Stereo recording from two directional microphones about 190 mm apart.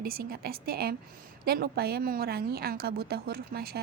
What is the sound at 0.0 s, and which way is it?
A woman's voice, 55° right (ahead or behind).